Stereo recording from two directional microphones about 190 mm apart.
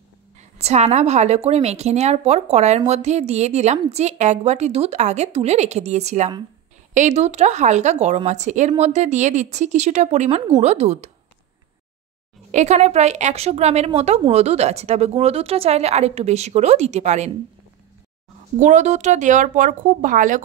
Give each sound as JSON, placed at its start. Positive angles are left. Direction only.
{"t": 0.4, "sound": "a woman's voice", "side_deg": -35}
{"t": 12.4, "sound": "a woman's voice", "side_deg": -40}
{"t": 18.6, "sound": "a woman's voice", "side_deg": -40}